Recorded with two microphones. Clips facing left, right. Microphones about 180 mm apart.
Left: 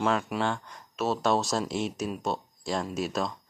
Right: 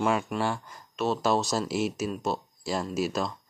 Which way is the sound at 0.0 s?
10° right (ahead or behind).